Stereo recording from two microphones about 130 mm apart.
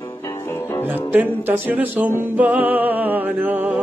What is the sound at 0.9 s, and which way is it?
Music, 15° right (ahead or behind).